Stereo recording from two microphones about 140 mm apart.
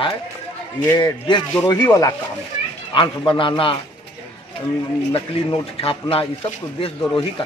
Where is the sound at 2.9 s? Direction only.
35° left (ahead or behind).